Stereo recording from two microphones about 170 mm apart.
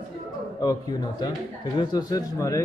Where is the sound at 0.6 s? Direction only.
25° left (ahead or behind).